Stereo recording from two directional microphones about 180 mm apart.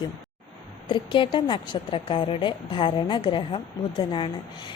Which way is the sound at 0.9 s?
25° left (ahead or behind).